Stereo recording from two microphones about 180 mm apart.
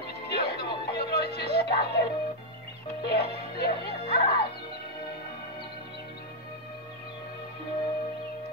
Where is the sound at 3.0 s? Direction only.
60° left (ahead or behind).